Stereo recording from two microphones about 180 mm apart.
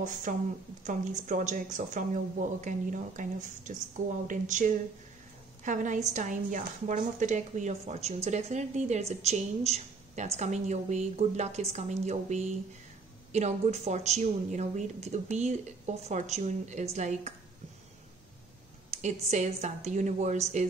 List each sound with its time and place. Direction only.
0.0 s a woman's voice: 45° right (ahead or behind)
18.9 s a sound: 40° right (ahead or behind)
19.2 s a woman's voice: 40° right (ahead or behind)